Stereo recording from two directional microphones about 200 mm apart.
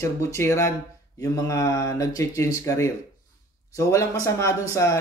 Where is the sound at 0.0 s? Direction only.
15° left (ahead or behind).